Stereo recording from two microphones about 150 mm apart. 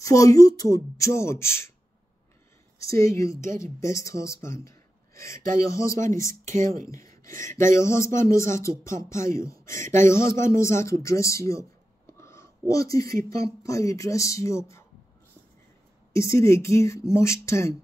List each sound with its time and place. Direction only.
0.0 s speech: 20° left (ahead or behind)
2.8 s speech: 20° left (ahead or behind)
12.2 s a sound: 20° left (ahead or behind)
13.6 s speech: 20° left (ahead or behind)
16.1 s speech: 20° left (ahead or behind)